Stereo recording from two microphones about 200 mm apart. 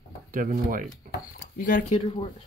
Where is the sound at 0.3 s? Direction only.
45° right (ahead or behind).